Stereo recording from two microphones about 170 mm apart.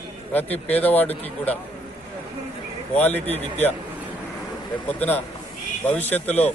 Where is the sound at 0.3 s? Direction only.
10° left (ahead or behind).